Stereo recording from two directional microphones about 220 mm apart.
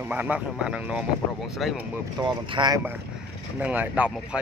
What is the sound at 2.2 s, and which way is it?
Speech, 20° right (ahead or behind).